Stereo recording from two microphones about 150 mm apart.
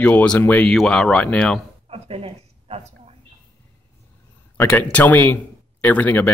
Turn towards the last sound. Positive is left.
turn(degrees=10)  # may be behind; listen again after turning